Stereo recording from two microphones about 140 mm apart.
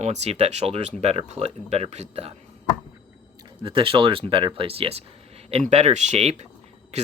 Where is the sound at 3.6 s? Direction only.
40° right (ahead or behind).